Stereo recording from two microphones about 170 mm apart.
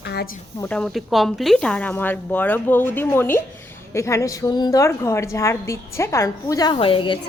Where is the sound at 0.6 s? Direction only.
5° left (ahead or behind).